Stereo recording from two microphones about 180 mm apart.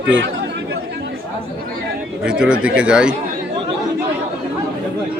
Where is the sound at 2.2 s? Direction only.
5° right (ahead or behind).